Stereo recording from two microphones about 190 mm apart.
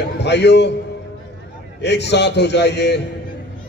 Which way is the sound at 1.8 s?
65° left (ahead or behind).